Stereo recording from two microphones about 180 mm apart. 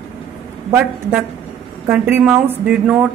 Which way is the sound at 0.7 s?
10° right (ahead or behind).